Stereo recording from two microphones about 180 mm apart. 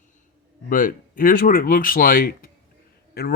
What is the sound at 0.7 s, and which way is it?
A man's voice, 50° left (ahead or behind).